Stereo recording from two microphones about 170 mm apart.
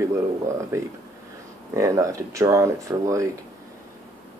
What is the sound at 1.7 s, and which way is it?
Speech, 20° right (ahead or behind).